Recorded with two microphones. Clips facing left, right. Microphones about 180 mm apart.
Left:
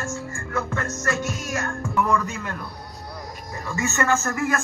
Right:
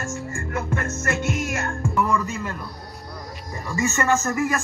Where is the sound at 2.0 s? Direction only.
5° right (ahead or behind).